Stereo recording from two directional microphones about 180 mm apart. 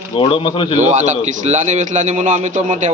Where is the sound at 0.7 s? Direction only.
40° right (ahead or behind).